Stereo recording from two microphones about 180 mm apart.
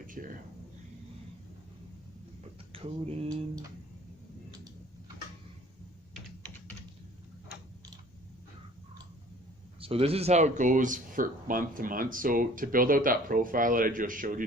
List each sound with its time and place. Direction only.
0.1 s speech: 50° right (ahead or behind)
2.7 s a sound: 35° right (ahead or behind)
9.8 s speech: 35° right (ahead or behind); by 14.4 s 50° right (ahead or behind)